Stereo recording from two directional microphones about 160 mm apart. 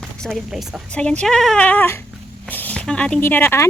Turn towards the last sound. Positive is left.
turn(degrees=15)  # may be behind; listen again after turning